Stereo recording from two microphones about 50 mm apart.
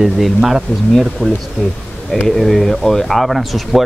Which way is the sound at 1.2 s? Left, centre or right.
Centre.